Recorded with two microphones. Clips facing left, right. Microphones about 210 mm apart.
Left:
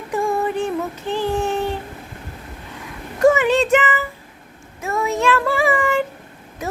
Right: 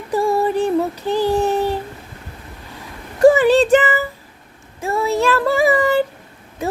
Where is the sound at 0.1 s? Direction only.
35° right (ahead or behind).